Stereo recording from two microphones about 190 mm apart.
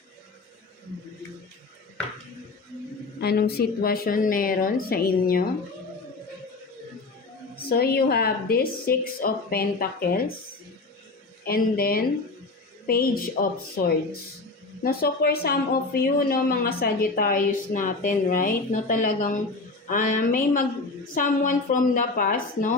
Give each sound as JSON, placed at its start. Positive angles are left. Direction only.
{"t": 3.2, "sound": "speech", "side_deg": 55}
{"t": 7.7, "sound": "speech", "side_deg": 55}
{"t": 11.4, "sound": "speech", "side_deg": 50}